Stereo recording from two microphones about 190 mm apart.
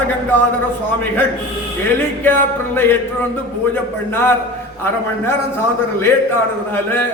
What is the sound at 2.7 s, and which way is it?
A man's voice, 10° left (ahead or behind).